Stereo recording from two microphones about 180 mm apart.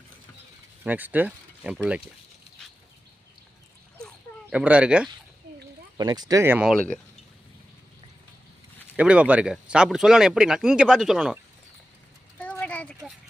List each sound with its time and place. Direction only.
0.9 s speech: 10° right (ahead or behind)
4.4 s speech: 5° right (ahead or behind)
6.0 s speech: 25° right (ahead or behind)
9.0 s speech: 5° right (ahead or behind)
12.4 s a sound: 10° left (ahead or behind)